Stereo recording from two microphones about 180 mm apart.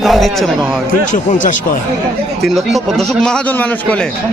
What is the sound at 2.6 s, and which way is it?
A man's voice, centre (ahead or behind).